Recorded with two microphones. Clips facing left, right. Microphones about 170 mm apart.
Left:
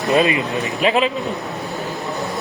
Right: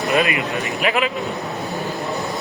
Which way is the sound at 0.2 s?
25° left (ahead or behind).